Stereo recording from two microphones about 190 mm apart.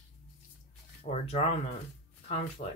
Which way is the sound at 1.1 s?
35° left (ahead or behind).